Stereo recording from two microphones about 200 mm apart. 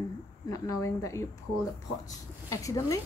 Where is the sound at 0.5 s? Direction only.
15° left (ahead or behind).